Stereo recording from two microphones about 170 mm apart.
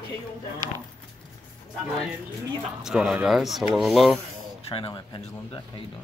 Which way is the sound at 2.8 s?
5° right (ahead or behind).